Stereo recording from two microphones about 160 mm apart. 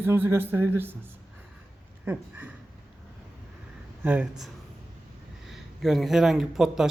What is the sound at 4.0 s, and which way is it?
Speech, 10° right (ahead or behind).